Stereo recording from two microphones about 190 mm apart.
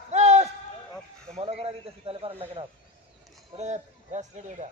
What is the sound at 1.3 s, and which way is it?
A man's voice, 35° right (ahead or behind).